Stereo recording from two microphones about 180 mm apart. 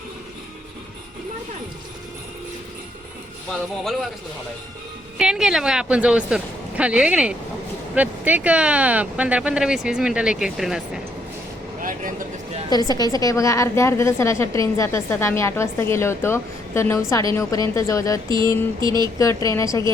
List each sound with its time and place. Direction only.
5.1 s speech: 5° right (ahead or behind)
11.8 s a sound: 50° right (ahead or behind)
12.7 s a woman's voice: 20° left (ahead or behind)